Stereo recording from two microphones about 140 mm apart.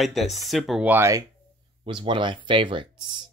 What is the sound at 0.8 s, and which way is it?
Speech, 15° right (ahead or behind).